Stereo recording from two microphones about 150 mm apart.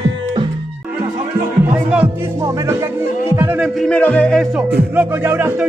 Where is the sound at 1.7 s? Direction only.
10° right (ahead or behind).